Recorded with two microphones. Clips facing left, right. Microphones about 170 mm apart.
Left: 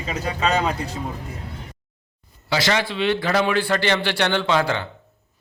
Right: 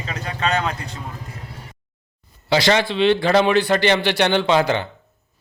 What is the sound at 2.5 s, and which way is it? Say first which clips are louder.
A man's voice: right 4 dB; 25° right (ahead or behind).